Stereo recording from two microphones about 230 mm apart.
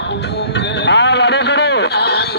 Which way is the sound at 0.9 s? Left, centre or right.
Left.